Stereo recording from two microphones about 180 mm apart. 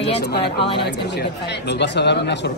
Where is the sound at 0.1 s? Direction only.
65° left (ahead or behind).